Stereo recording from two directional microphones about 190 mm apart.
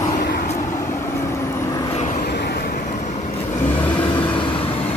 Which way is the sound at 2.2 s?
60° left (ahead or behind).